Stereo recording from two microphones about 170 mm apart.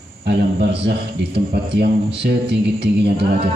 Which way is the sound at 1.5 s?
70° right (ahead or behind).